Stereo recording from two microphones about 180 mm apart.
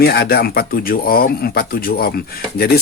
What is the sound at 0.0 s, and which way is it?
Speech, 60° left (ahead or behind).